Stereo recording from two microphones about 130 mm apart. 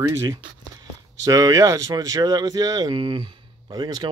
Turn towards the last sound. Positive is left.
turn(degrees=-35)  # may be behind; listen again after turning